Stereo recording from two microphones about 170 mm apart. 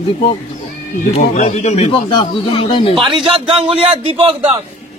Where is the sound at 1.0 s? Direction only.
45° left (ahead or behind).